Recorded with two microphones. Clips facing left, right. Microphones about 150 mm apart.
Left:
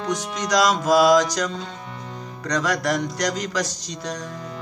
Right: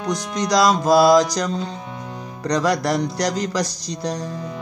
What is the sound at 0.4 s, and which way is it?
Music, 35° right (ahead or behind).